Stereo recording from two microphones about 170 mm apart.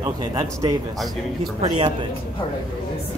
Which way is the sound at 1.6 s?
40° right (ahead or behind).